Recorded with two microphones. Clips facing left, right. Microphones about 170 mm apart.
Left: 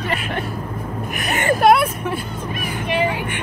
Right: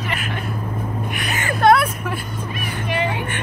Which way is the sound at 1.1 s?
50° left (ahead or behind).